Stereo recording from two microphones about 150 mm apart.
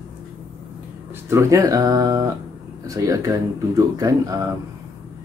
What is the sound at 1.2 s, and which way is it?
Speech, 20° right (ahead or behind).